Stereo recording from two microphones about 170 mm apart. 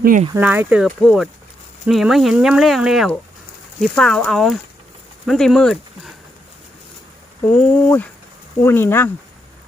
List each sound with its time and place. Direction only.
0.0 s speech: 50° right (ahead or behind)
0.3 s speech: 10° right (ahead or behind)
0.9 s speech: centre (ahead or behind)
7.4 s speech: 10° left (ahead or behind)